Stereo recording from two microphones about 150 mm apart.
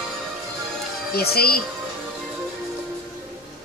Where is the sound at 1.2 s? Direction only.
90° left.